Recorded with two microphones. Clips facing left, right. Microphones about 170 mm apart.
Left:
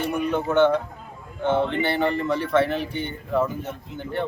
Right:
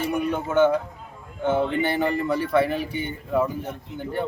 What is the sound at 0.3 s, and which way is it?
Speech, 10° right (ahead or behind).